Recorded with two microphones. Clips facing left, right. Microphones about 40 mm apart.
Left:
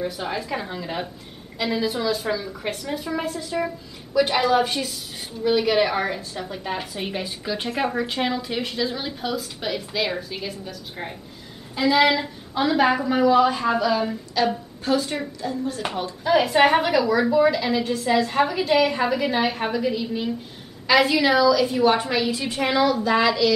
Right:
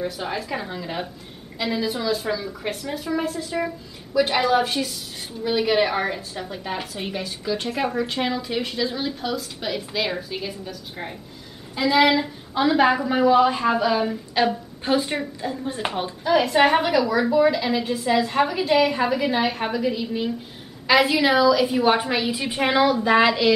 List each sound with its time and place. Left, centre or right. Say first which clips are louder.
0.0 s a woman's voice: even; centre
14.4 s a woman's voice: right 1 dB; right
16.3 s a woman's voice: even; centre; by 23.5 s right